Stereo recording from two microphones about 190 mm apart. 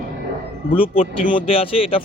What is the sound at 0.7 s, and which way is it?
Speech, 30° left (ahead or behind).